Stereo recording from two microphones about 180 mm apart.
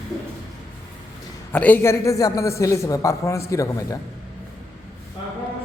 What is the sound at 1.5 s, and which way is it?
A woman's voice, 10° left (ahead or behind).